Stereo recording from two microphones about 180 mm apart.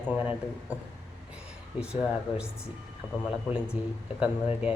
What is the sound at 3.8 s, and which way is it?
Speech, 10° right (ahead or behind).